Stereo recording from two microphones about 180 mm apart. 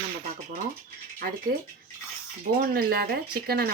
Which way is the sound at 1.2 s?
55° right (ahead or behind).